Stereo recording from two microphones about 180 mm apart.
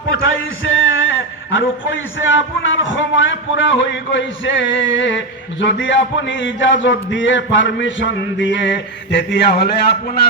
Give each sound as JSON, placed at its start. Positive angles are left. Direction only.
{"t": 0.1, "sound": "a man's voice", "side_deg": 90}